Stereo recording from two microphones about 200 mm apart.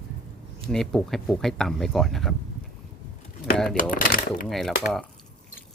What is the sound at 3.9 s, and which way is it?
Shuffling cards, 45° left (ahead or behind).